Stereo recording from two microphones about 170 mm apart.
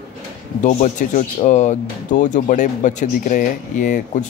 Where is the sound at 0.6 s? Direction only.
45° left (ahead or behind).